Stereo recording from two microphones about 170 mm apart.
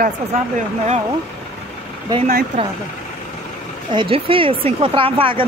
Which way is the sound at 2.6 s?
35° right (ahead or behind).